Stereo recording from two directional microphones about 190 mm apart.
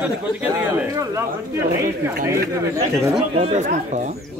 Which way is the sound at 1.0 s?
15° right (ahead or behind).